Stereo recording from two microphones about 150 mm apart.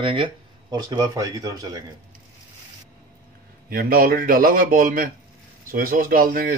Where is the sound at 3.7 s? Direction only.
75° right (ahead or behind).